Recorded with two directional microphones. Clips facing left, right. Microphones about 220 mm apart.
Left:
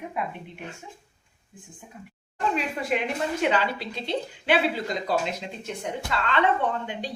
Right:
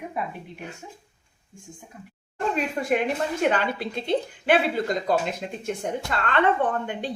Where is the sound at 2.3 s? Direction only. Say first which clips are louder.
Right 2 dB; 50° right (ahead or behind).